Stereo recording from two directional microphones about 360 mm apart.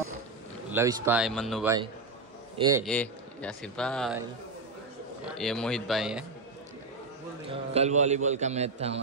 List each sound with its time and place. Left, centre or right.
0.7 s a man's voice: centre
2.8 s a man's voice: centre
5.4 s a man's voice: centre
7.4 s a man's voice: centre